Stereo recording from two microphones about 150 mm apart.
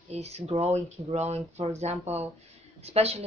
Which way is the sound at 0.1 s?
45° right (ahead or behind).